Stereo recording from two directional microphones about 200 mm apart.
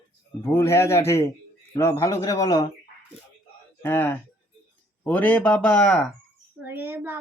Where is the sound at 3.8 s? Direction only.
10° left (ahead or behind).